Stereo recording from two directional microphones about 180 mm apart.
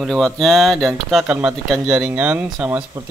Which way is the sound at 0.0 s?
Centre (ahead or behind).